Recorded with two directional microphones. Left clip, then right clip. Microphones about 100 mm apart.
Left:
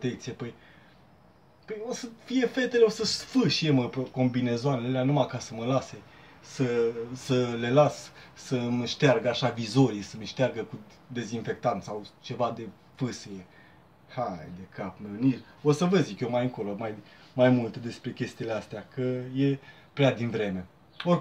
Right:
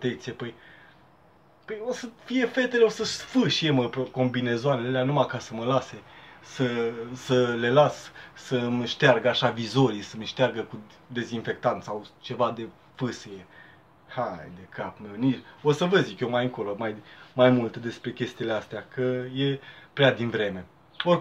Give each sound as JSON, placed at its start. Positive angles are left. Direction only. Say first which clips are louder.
{"t": 0.0, "sound": "speech", "louder": "right 3 dB", "side_deg": 15}
{"t": 1.7, "sound": "speech", "louder": "right 3 dB", "side_deg": 15}